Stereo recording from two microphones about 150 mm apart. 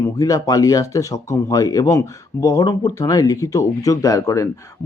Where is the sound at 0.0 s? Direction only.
25° left (ahead or behind).